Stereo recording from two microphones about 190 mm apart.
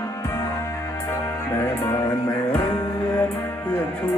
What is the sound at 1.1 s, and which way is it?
Music, 10° left (ahead or behind).